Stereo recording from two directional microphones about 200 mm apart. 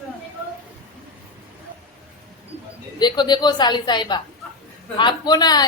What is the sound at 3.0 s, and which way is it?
Speech, 20° left (ahead or behind).